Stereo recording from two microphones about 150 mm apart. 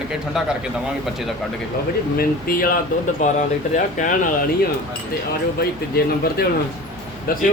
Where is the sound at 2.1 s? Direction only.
75° left (ahead or behind).